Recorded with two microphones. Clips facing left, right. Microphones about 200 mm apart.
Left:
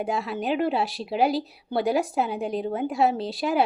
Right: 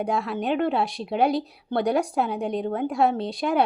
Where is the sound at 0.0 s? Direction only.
5° left (ahead or behind).